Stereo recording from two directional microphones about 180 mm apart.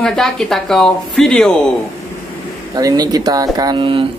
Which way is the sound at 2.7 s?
20° right (ahead or behind).